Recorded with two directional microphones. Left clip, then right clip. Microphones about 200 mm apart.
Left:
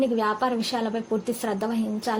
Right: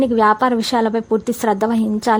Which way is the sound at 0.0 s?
40° right (ahead or behind).